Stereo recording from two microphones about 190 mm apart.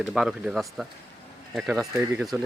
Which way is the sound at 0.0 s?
Centre (ahead or behind).